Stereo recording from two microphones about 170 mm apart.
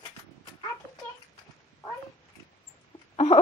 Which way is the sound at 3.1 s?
40° left (ahead or behind).